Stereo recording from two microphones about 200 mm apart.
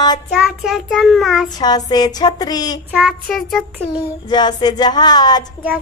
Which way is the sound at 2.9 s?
5° right (ahead or behind).